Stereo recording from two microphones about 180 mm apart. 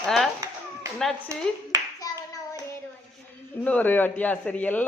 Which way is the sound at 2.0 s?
20° left (ahead or behind).